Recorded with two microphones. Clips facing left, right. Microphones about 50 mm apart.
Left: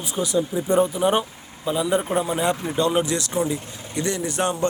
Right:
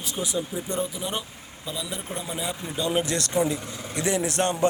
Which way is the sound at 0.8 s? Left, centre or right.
Left.